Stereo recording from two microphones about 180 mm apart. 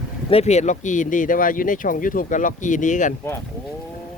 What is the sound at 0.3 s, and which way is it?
Speech, 35° left (ahead or behind).